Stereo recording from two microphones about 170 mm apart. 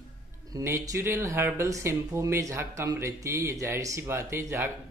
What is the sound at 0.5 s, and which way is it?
Speech, 20° right (ahead or behind).